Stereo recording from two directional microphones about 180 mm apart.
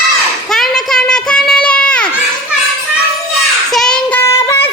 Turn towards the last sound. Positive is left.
turn(degrees=15)  # may be behind; listen again after turning